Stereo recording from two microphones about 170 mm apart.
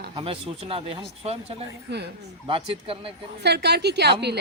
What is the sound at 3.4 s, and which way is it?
Speech, 75° right (ahead or behind).